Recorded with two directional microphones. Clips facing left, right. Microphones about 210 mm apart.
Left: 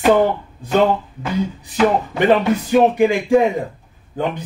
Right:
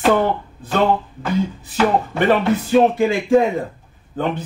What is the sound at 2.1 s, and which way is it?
Speech, 15° left (ahead or behind).